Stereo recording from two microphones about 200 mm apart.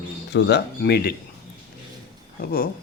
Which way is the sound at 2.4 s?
50° left (ahead or behind).